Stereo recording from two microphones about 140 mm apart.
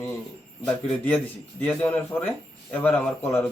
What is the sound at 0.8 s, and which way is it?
A man's voice, 10° left (ahead or behind).